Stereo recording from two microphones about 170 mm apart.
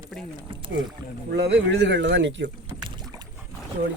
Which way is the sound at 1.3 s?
90° right.